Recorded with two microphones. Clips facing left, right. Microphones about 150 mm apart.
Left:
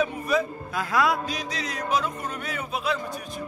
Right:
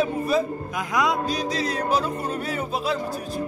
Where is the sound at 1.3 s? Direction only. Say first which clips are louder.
Right 6 dB; 35° right (ahead or behind).